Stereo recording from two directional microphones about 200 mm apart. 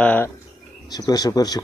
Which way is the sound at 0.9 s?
20° left (ahead or behind).